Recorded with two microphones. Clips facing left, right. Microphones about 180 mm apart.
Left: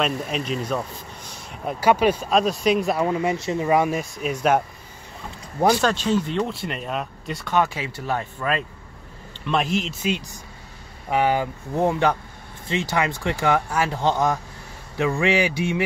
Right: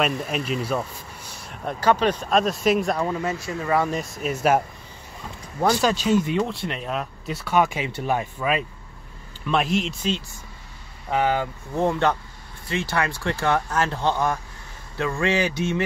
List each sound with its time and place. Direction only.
0.0 s speech: 5° right (ahead or behind)
1.5 s speech: 5° left (ahead or behind)
3.1 s speech: 15° left (ahead or behind)
3.9 s speech: centre (ahead or behind)
5.8 s speech: 10° right (ahead or behind)
6.4 s speech: centre (ahead or behind)
10.0 s speech: 15° left (ahead or behind)